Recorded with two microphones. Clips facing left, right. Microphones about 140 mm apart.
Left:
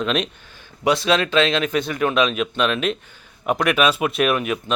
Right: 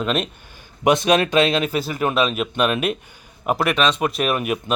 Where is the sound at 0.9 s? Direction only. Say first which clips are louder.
Right 2 dB; 20° right (ahead or behind).